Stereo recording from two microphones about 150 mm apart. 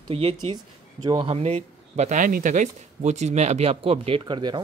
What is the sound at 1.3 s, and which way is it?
Speech, 45° right (ahead or behind).